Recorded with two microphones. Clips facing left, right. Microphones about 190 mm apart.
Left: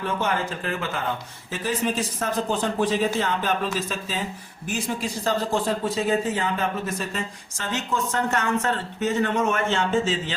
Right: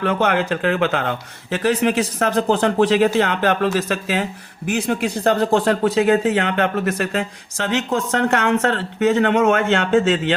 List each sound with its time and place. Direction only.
0.0 s speech: 75° right (ahead or behind)